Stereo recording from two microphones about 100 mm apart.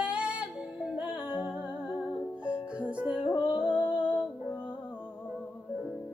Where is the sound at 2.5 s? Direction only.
15° right (ahead or behind).